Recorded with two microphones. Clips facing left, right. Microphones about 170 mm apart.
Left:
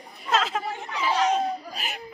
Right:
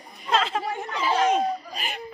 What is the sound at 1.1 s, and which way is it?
Speech, 50° right (ahead or behind).